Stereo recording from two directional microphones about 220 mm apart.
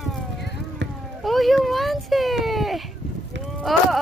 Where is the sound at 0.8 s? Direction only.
55° right (ahead or behind).